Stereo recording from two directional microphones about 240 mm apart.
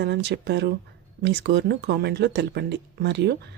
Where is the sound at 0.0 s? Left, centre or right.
Right.